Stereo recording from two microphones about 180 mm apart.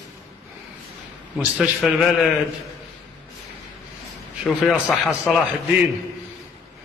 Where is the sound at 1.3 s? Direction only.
5° right (ahead or behind).